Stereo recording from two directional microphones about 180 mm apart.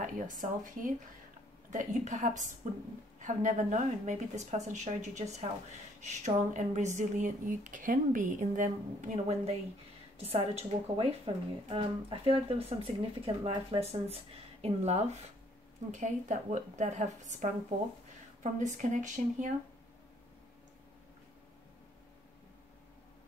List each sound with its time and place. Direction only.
0.0 s a woman's voice: 45° right (ahead or behind)